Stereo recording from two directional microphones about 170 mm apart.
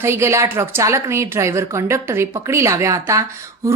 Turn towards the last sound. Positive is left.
turn(degrees=-20)  # may be behind; listen again after turning